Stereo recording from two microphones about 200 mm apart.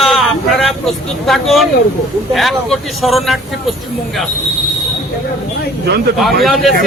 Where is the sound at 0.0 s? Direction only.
Centre (ahead or behind).